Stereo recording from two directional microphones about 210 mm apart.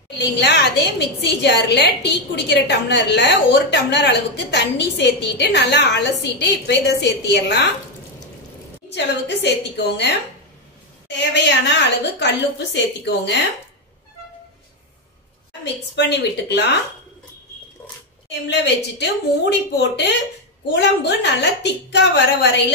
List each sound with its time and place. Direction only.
0.2 s a woman's voice: 55° left (ahead or behind)
8.8 s a woman's voice: 55° left (ahead or behind)
15.6 s a woman's voice: 55° left (ahead or behind)
18.3 s a woman's voice: 55° left (ahead or behind)
19.8 s a woman's voice: 55° left (ahead or behind)